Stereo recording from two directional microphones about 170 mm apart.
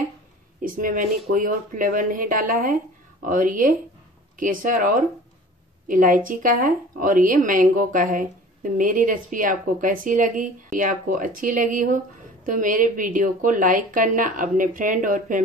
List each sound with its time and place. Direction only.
0.6 s a woman's voice: 55° right (ahead or behind)